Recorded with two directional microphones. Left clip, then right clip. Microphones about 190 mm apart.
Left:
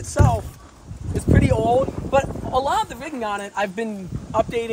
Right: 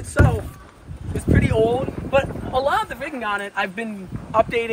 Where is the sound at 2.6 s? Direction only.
35° left (ahead or behind).